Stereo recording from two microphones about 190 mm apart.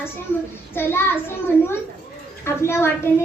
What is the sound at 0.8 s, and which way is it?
Speech, 10° left (ahead or behind).